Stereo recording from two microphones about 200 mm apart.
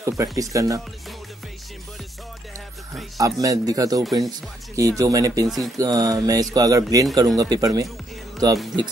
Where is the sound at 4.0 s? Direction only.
Centre (ahead or behind).